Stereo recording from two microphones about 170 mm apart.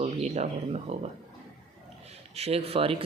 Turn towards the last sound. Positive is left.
turn(degrees=-35)  # may be behind; listen again after turning